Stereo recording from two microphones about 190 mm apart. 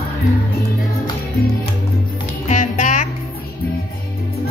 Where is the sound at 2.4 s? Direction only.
40° left (ahead or behind).